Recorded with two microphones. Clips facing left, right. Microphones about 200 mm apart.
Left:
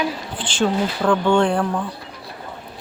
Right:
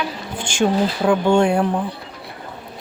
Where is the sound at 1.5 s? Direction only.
20° right (ahead or behind).